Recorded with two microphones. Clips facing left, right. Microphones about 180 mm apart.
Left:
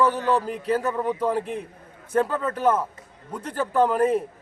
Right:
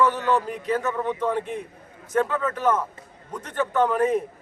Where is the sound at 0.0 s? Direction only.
35° left (ahead or behind).